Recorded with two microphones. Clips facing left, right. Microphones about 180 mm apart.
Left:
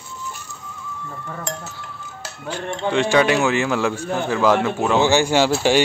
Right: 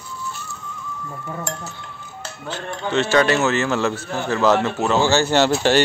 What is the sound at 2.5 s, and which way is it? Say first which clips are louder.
Speech: left 3 dB; 10° left (ahead or behind).